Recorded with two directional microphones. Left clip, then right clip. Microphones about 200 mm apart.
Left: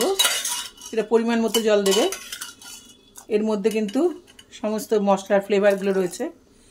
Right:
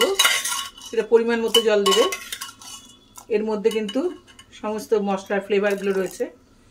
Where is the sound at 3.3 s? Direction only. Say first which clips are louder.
Right 1 dB; 40° left (ahead or behind).